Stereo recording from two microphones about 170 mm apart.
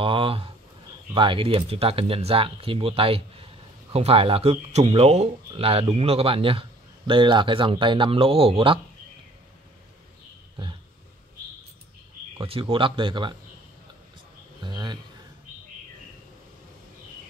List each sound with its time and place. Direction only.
0.0 s speech: 30° right (ahead or behind)
12.4 s speech: 30° right (ahead or behind)
14.6 s a sound: 25° right (ahead or behind)